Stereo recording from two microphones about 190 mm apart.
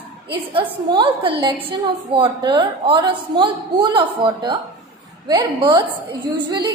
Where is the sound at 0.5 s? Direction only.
25° right (ahead or behind).